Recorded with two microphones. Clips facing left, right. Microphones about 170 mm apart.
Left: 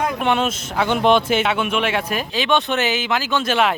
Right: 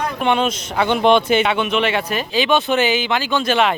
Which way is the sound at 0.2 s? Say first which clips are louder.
Right 2 dB; 5° left (ahead or behind).